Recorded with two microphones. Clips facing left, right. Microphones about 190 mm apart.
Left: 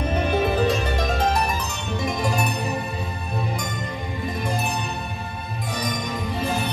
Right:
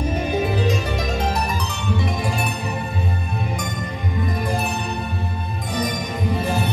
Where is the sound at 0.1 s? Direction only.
60° left (ahead or behind).